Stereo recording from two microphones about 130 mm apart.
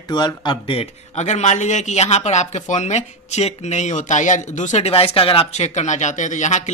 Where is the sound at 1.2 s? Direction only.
60° left (ahead or behind).